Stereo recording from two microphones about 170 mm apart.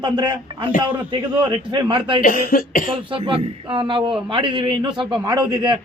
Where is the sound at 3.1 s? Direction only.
30° right (ahead or behind).